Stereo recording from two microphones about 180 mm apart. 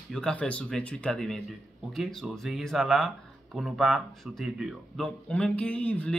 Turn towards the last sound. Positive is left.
turn(degrees=5)  # may be behind; listen again after turning